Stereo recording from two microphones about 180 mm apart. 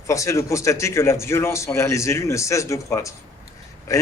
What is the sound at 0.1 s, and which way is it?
A man's voice, 15° left (ahead or behind).